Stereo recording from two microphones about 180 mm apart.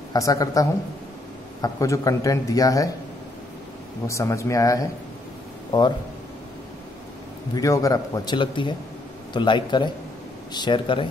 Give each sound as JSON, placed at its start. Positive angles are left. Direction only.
{"t": 0.1, "sound": "a man's voice", "side_deg": 20}
{"t": 4.1, "sound": "speech", "side_deg": 15}
{"t": 7.5, "sound": "a man's voice", "side_deg": 20}